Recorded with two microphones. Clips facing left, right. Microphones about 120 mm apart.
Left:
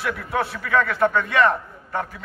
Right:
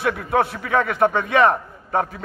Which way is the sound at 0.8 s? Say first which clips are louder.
Right 2 dB; 15° right (ahead or behind).